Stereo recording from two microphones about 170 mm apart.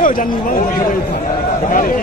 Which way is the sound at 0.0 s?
55° left (ahead or behind).